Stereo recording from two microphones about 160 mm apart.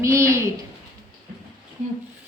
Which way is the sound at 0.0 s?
20° right (ahead or behind).